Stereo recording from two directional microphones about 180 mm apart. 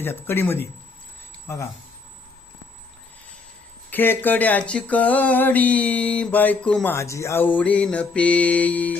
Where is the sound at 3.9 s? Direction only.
10° left (ahead or behind).